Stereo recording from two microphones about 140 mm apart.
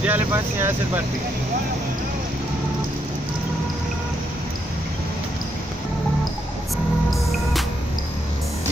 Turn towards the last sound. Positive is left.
turn(degrees=0)  # may be behind; listen again after turning